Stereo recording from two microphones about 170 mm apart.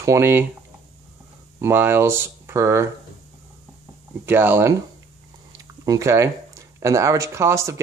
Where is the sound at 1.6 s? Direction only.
15° right (ahead or behind).